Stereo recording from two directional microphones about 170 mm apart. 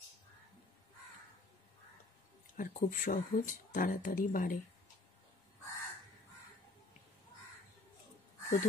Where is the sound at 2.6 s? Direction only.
55° left (ahead or behind).